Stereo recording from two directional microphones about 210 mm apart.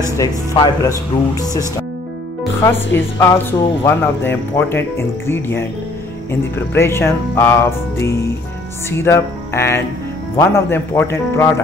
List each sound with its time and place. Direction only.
0.2 s speech: 15° left (ahead or behind)
2.6 s speech: 10° left (ahead or behind)
6.7 s speech: 10° left (ahead or behind)
8.9 s speech: 10° left (ahead or behind)